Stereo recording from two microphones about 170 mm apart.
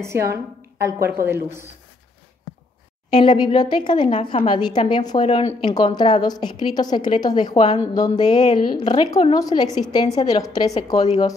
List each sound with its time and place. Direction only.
0.0 s a woman's voice: 15° right (ahead or behind)
3.2 s a woman's voice: 30° left (ahead or behind)
5.2 s speech: 40° left (ahead or behind)
5.6 s a woman's voice: 25° left (ahead or behind)